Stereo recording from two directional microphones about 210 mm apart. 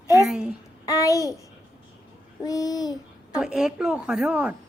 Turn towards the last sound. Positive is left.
turn(degrees=-5)  # may be behind; listen again after turning